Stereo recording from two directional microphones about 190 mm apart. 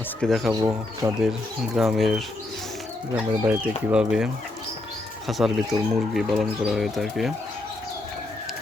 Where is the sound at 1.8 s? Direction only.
Centre (ahead or behind).